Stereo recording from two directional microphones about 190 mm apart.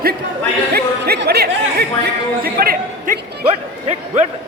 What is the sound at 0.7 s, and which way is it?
Music, 55° right (ahead or behind).